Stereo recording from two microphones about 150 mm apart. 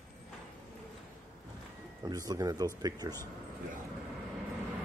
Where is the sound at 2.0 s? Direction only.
25° right (ahead or behind).